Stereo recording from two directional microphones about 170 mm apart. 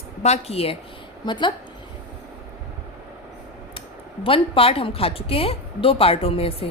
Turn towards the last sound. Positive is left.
turn(degrees=35)  # may be behind; listen again after turning